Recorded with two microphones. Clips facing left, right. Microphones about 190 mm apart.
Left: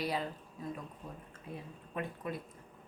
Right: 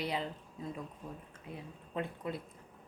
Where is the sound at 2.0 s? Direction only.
25° right (ahead or behind).